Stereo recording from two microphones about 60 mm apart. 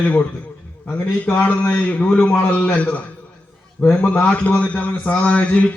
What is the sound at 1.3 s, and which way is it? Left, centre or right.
Speech, left.